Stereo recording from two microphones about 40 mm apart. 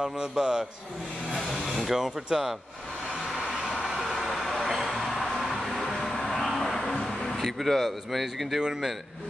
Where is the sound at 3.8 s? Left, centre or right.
Centre.